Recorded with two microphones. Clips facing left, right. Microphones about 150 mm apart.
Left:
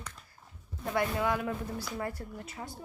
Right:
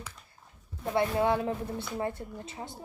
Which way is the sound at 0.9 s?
30° right (ahead or behind).